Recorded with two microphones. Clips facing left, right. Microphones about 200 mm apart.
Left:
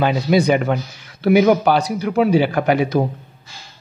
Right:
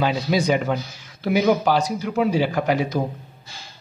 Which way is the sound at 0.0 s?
60° left (ahead or behind).